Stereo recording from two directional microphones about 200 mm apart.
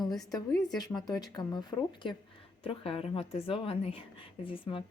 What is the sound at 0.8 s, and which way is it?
Speech, 20° left (ahead or behind).